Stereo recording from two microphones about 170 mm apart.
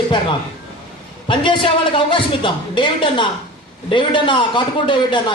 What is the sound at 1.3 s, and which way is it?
A man's voice, 30° left (ahead or behind).